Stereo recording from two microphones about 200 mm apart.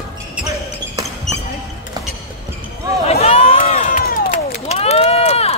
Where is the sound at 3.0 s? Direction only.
30° left (ahead or behind).